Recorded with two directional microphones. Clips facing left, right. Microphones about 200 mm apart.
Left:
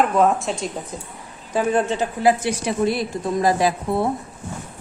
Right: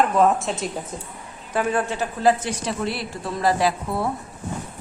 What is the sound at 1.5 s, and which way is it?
A woman's voice, 20° left (ahead or behind).